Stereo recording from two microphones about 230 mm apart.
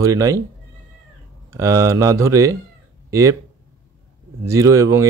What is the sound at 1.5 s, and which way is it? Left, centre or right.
Speech, centre.